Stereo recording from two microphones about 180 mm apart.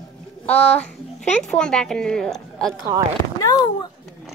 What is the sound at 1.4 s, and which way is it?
A woman's voice, 5° left (ahead or behind).